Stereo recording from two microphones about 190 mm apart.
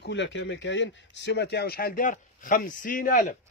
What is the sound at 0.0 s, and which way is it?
Speech, 70° left (ahead or behind).